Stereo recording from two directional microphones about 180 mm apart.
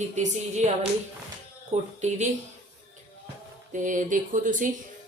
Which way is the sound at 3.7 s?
45° right (ahead or behind).